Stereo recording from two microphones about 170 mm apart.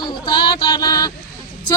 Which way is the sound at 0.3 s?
25° left (ahead or behind).